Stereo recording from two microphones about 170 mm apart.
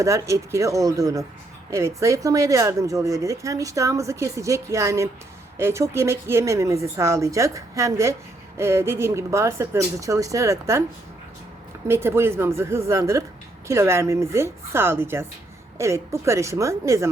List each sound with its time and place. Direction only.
0.0 s speech: 15° right (ahead or behind)
11.9 s speech: 15° right (ahead or behind)